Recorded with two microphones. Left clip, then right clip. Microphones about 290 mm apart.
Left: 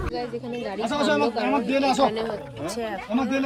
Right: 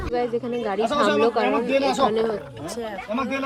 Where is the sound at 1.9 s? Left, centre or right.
Centre.